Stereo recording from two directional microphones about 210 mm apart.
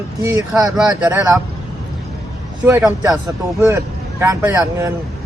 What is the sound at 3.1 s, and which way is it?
Speech, 15° right (ahead or behind).